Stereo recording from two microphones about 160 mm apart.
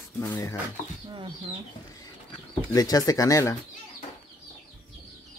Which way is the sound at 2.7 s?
25° left (ahead or behind).